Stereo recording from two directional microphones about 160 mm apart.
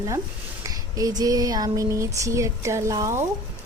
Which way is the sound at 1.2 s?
20° right (ahead or behind).